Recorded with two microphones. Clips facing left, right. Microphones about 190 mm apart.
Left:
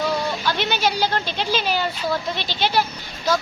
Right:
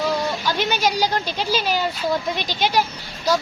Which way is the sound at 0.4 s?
10° right (ahead or behind).